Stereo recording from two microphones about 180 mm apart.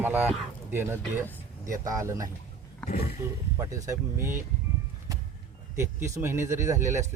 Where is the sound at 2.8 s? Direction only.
5° left (ahead or behind).